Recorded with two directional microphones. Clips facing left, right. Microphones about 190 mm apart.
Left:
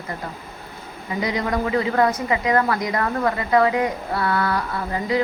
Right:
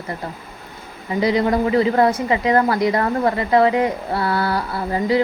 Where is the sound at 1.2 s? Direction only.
30° right (ahead or behind).